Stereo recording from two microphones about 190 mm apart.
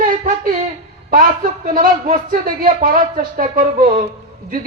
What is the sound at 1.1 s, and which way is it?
Speech, 50° right (ahead or behind).